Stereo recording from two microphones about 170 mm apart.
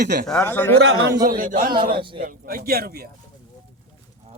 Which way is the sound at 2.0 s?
30° right (ahead or behind).